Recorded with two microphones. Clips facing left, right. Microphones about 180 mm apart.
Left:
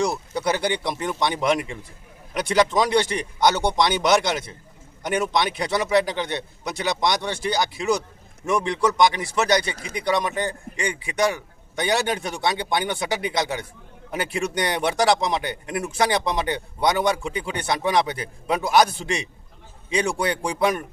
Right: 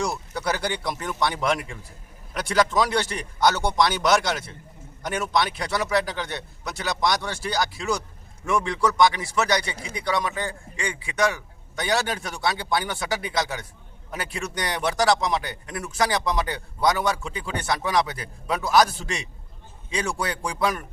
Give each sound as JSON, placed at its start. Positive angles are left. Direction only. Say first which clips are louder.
{"t": 0.3, "sound": "a man's voice", "louder": "left 4 dB", "side_deg": 20}